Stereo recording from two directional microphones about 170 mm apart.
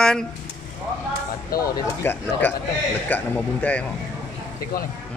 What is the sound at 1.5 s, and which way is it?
Speech, 60° left (ahead or behind).